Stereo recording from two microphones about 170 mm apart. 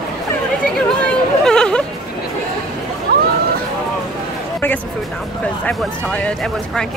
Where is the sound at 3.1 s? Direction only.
65° right (ahead or behind).